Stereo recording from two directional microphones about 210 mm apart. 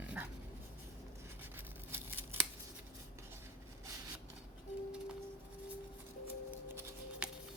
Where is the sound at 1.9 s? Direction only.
10° right (ahead or behind).